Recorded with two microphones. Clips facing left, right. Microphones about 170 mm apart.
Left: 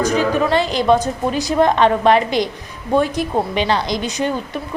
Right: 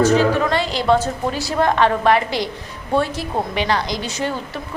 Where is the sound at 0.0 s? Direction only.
15° left (ahead or behind).